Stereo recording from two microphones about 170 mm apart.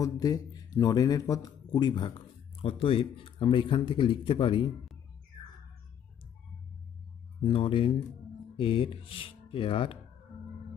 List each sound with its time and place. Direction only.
0.0 s speech: 20° left (ahead or behind)
7.4 s speech: 30° left (ahead or behind)